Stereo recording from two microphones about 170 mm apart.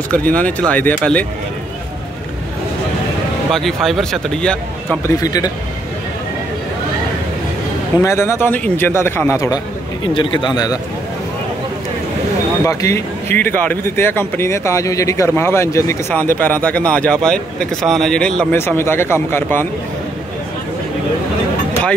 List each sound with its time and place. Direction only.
0.1 s speech: 10° left (ahead or behind)
3.5 s speech: centre (ahead or behind)
5.0 s speech: 20° left (ahead or behind)
8.0 s speech: 15° left (ahead or behind)
10.1 s speech: 25° left (ahead or behind)
12.6 s speech: 15° left (ahead or behind)